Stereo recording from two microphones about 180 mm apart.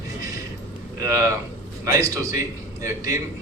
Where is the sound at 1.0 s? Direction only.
15° right (ahead or behind).